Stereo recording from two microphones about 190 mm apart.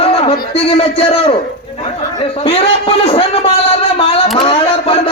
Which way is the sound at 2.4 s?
30° left (ahead or behind).